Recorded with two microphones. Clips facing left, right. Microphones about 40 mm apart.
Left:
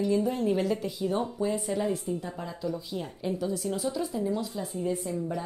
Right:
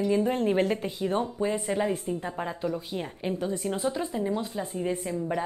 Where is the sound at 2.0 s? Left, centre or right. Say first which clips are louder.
Right 3 dB; right.